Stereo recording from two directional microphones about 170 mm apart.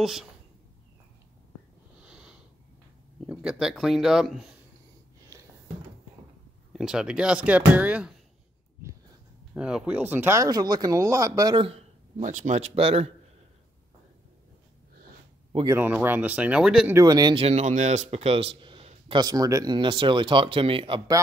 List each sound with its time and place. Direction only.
0.0 s speech: centre (ahead or behind)
2.0 s a sound: 5° right (ahead or behind)
3.3 s speech: 5° right (ahead or behind)
6.7 s speech: 5° right (ahead or behind)
9.5 s speech: 5° right (ahead or behind); by 11.8 s 30° right (ahead or behind)
12.2 s speech: 45° right (ahead or behind)
15.7 s speech: 10° right (ahead or behind)
16.9 s speech: 20° right (ahead or behind)
19.2 s speech: 20° right (ahead or behind)